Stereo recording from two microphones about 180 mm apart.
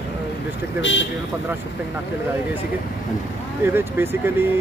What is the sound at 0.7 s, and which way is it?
Speech, 90° left.